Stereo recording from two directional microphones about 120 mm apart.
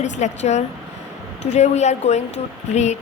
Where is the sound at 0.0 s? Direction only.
70° left (ahead or behind).